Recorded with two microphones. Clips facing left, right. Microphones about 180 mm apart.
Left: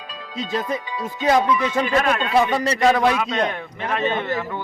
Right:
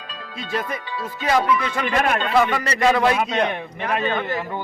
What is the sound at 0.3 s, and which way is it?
A man's voice, 20° left (ahead or behind).